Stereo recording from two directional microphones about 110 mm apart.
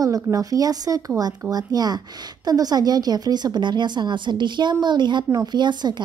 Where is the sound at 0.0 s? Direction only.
30° right (ahead or behind).